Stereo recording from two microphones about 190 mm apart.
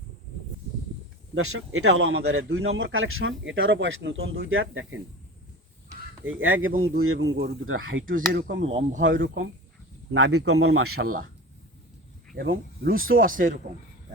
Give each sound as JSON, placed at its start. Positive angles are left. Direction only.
{"t": 1.5, "sound": "speech", "side_deg": -90}
{"t": 6.2, "sound": "speech", "side_deg": -90}
{"t": 8.3, "sound": "speech", "side_deg": -70}
{"t": 8.5, "sound": "speech", "side_deg": -40}
{"t": 9.0, "sound": "speech", "side_deg": -85}
{"t": 10.1, "sound": "speech", "side_deg": -90}
{"t": 11.0, "sound": "speech", "side_deg": -50}
{"t": 12.3, "sound": "speech", "side_deg": -55}